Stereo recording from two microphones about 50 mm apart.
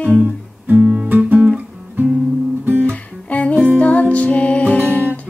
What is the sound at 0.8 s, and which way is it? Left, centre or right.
Music, right.